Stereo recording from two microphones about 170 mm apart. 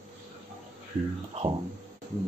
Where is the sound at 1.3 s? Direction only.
35° right (ahead or behind).